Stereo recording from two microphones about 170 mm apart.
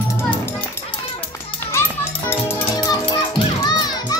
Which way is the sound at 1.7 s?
15° left (ahead or behind).